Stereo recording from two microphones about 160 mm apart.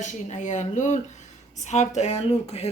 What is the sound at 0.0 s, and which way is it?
A woman's voice, 50° left (ahead or behind).